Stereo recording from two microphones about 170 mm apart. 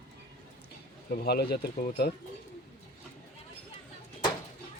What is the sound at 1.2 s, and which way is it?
Speech, 65° left (ahead or behind).